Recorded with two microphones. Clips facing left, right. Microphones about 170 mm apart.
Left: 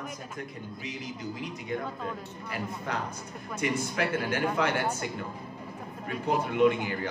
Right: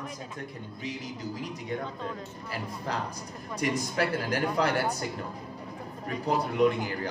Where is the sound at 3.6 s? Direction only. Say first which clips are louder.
Right 1 dB; 35° right (ahead or behind).